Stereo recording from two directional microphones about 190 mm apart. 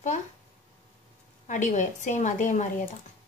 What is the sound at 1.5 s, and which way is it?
Speech, 40° left (ahead or behind).